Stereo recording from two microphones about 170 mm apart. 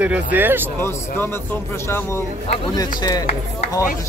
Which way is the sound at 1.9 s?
15° left (ahead or behind).